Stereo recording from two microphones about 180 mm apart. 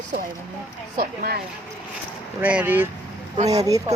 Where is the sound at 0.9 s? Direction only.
60° right (ahead or behind).